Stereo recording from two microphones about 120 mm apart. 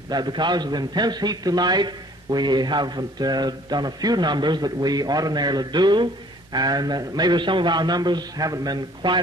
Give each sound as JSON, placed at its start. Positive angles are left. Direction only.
{"t": 0.1, "sound": "a man's voice", "side_deg": -40}